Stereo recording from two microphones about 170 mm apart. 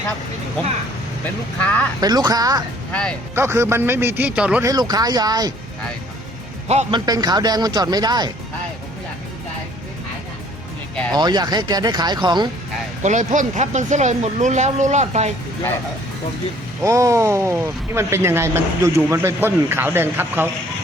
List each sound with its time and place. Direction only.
1.6 s speech: 10° left (ahead or behind)
2.0 s speech: 25° right (ahead or behind)
2.9 s speech: 5° left (ahead or behind)
3.3 s speech: 15° right (ahead or behind)
4.6 s speech: 20° right (ahead or behind)
6.9 s speech: 25° right (ahead or behind)
11.1 s speech: 25° right (ahead or behind)
13.0 s speech: 45° right (ahead or behind)
16.8 s speech: 20° right (ahead or behind)